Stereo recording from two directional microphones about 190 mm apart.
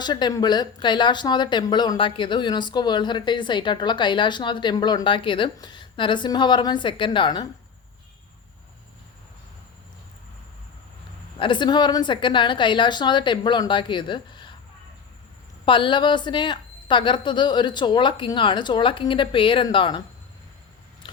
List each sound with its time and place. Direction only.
0.0 s speech: 20° left (ahead or behind)
11.3 s speech: 25° left (ahead or behind)
15.6 s speech: 25° left (ahead or behind)